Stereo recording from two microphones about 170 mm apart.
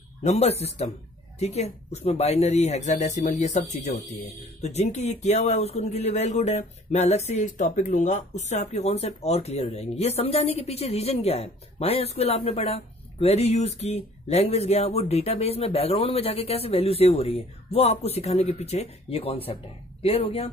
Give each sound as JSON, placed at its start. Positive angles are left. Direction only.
{"t": 0.2, "sound": "speech", "side_deg": 40}